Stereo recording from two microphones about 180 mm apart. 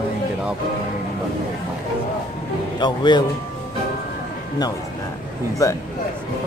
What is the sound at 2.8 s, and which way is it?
Speech, 25° left (ahead or behind).